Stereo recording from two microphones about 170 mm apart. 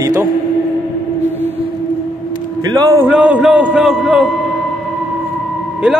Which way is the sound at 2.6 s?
25° right (ahead or behind).